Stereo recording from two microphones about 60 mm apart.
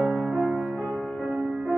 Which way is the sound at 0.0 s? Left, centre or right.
Centre.